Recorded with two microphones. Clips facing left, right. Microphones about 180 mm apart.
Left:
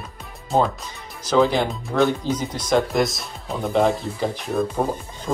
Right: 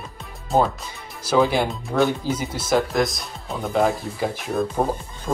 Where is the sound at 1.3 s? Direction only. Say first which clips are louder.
Left 1 dB; 10° right (ahead or behind).